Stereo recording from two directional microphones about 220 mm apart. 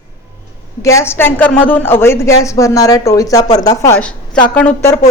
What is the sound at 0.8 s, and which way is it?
Speech, 15° left (ahead or behind).